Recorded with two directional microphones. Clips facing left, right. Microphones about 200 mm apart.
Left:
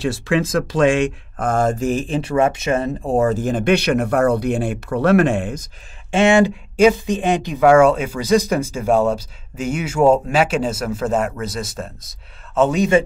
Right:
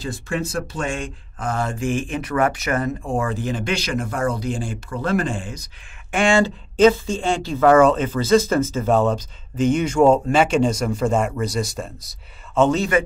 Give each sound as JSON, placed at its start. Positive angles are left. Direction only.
{"t": 0.0, "sound": "speech", "side_deg": 90}
{"t": 1.3, "sound": "speech", "side_deg": 50}
{"t": 3.1, "sound": "speech", "side_deg": 40}
{"t": 6.1, "sound": "speech", "side_deg": 20}